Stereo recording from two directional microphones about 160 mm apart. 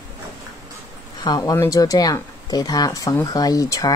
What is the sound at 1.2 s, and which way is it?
Speech, 20° left (ahead or behind).